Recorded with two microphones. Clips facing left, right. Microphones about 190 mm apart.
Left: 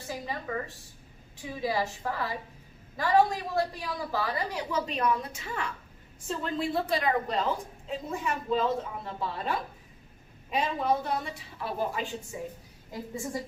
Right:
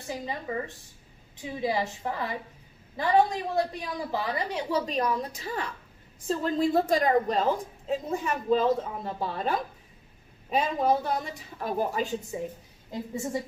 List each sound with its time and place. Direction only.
0.1 s a woman's voice: 20° right (ahead or behind)
4.7 s a woman's voice: 35° right (ahead or behind)
12.9 s a woman's voice: 25° right (ahead or behind)